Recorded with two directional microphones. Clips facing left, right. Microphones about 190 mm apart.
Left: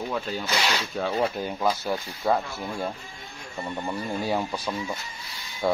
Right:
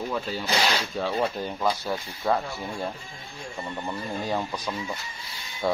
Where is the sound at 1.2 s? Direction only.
5° left (ahead or behind).